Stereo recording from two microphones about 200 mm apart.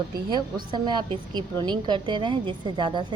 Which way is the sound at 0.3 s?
20° right (ahead or behind).